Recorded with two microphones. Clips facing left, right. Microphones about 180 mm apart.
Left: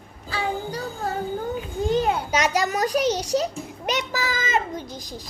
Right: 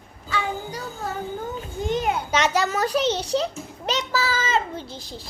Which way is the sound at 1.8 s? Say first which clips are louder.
Left 2 dB; 35° left (ahead or behind).